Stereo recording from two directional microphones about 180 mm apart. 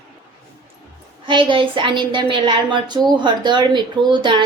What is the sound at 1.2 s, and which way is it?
Speech, 25° right (ahead or behind).